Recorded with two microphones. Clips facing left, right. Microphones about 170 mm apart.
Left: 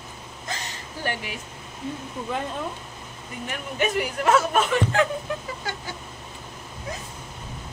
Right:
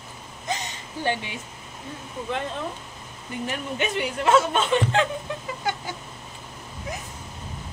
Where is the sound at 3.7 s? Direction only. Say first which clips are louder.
Left 4 dB; 35° left (ahead or behind).